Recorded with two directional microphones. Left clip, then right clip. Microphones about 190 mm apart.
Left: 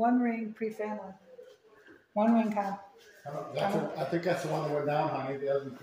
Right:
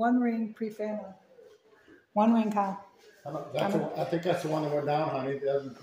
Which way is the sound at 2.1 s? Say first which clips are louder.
Right 2 dB; 35° right (ahead or behind).